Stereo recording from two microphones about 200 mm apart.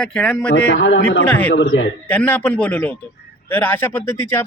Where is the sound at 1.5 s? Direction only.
70° left (ahead or behind).